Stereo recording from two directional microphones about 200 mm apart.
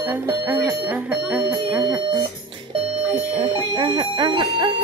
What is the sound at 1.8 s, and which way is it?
Speech, 20° right (ahead or behind).